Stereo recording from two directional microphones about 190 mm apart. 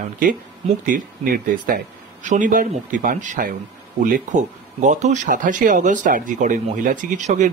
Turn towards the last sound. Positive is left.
turn(degrees=-40)  # may be behind; listen again after turning